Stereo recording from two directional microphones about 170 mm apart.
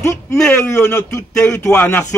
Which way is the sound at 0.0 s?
15° left (ahead or behind).